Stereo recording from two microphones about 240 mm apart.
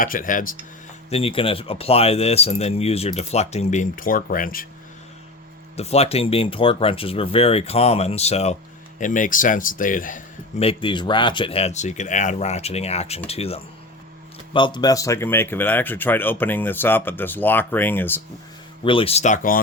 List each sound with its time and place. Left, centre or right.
0.0 s speech: left
1.1 s a man's voice: left
5.7 s a man's voice: left; by 18.2 s centre
18.9 s a man's voice: left